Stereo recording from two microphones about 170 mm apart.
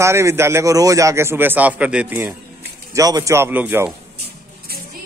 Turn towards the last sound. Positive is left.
turn(degrees=-10)  # may be behind; listen again after turning